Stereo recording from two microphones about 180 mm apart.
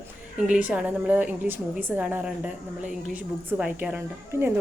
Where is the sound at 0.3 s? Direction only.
5° right (ahead or behind).